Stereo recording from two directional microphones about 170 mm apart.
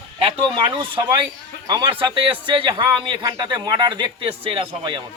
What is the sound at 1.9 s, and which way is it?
Speech, 30° right (ahead or behind).